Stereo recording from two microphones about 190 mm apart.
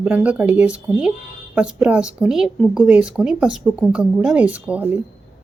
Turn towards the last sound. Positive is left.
turn(degrees=-5)  # may be behind; listen again after turning